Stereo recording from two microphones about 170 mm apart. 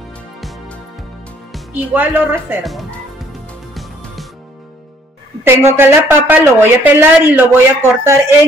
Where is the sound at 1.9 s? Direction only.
10° right (ahead or behind).